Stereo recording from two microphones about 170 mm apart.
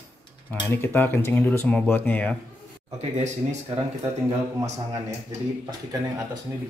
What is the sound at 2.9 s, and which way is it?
Speech, 40° right (ahead or behind).